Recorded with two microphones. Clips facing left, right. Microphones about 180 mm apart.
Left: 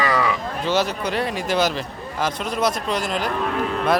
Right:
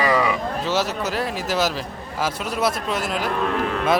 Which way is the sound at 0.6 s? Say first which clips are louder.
Left 3 dB; centre (ahead or behind).